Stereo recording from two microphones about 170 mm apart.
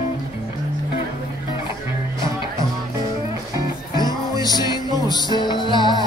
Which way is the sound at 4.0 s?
25° left (ahead or behind).